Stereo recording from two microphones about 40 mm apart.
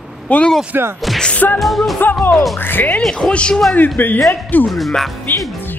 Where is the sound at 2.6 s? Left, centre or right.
Left.